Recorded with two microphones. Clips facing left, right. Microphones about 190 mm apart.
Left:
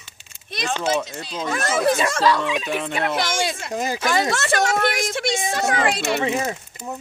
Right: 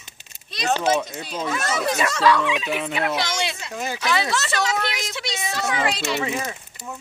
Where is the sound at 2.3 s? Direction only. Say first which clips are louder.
Right 3 dB; 35° left (ahead or behind).